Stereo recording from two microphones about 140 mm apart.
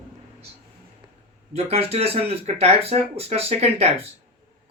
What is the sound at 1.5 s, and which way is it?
Speech, 45° right (ahead or behind).